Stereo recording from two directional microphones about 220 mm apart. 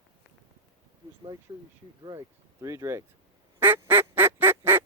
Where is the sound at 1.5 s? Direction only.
20° right (ahead or behind).